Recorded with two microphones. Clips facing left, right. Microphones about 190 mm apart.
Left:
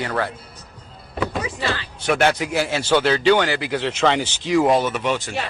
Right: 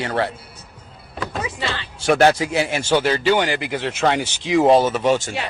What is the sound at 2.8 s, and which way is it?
A man's voice, 10° right (ahead or behind).